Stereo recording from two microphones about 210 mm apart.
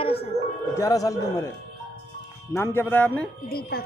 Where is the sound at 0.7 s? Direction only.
15° left (ahead or behind).